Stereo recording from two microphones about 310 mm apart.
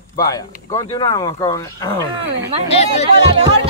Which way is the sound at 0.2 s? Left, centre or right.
Centre.